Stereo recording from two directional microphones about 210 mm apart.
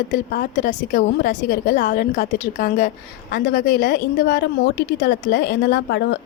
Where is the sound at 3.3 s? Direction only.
50° left (ahead or behind).